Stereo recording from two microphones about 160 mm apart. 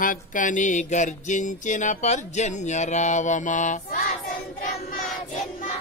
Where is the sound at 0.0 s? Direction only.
55° left (ahead or behind).